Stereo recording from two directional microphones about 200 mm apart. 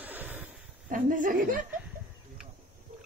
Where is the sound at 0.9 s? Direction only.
40° right (ahead or behind).